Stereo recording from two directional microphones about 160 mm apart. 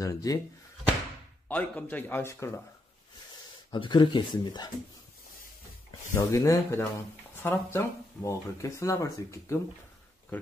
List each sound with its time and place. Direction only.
0.0 s speech: 20° left (ahead or behind)
1.5 s a man's voice: 10° left (ahead or behind)
3.7 s speech: 30° left (ahead or behind)
6.1 s speech: 20° left (ahead or behind)